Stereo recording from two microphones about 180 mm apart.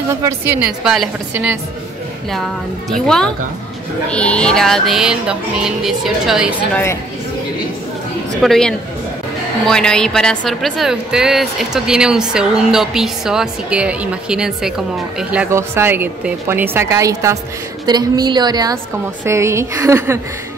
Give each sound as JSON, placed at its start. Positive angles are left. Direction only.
{"t": 0.1, "sound": "a woman's voice", "side_deg": -15}
{"t": 4.1, "sound": "a woman's voice", "side_deg": 5}
{"t": 8.4, "sound": "a woman's voice", "side_deg": 5}